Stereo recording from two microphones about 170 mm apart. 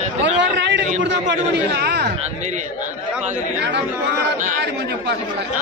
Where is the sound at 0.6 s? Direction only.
90° right.